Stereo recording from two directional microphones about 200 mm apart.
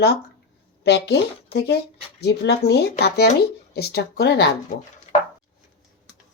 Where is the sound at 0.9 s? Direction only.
55° left (ahead or behind).